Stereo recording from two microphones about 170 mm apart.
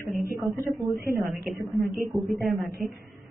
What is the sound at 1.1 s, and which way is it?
A man's voice, centre (ahead or behind).